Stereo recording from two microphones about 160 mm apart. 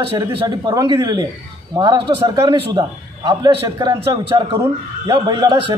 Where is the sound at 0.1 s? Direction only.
35° right (ahead or behind).